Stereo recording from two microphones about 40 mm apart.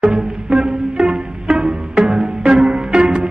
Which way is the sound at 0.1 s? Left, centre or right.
Centre.